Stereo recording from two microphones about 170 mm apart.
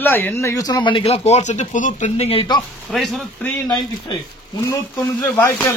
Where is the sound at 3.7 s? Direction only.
25° left (ahead or behind).